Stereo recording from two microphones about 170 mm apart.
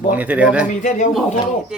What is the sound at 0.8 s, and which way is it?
Speech, 45° left (ahead or behind).